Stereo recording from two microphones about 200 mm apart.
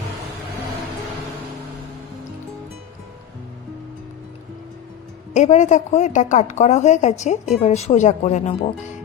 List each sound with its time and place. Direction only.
5.3 s a woman's voice: 35° left (ahead or behind)